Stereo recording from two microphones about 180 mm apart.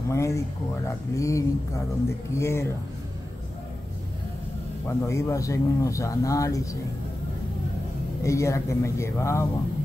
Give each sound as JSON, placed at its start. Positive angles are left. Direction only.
{"t": 0.1, "sound": "speech", "side_deg": 15}
{"t": 4.8, "sound": "speech", "side_deg": 15}
{"t": 8.2, "sound": "speech", "side_deg": 15}